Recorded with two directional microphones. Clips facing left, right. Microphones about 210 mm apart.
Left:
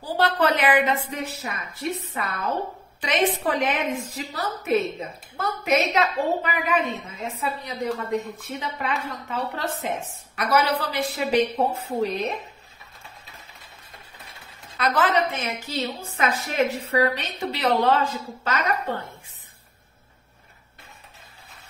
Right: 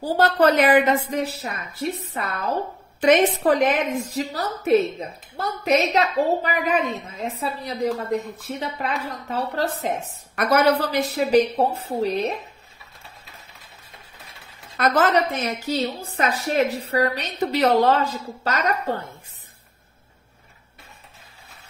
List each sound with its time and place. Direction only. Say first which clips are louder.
0.0 s a woman's voice: right 4 dB; 45° right (ahead or behind)
14.8 s a woman's voice: right 3 dB; 45° right (ahead or behind)